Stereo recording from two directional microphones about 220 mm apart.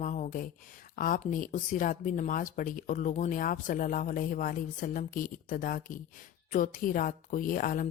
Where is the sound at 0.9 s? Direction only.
40° left (ahead or behind).